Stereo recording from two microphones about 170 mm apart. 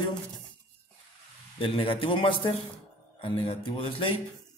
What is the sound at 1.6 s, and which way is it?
Speech, 30° left (ahead or behind).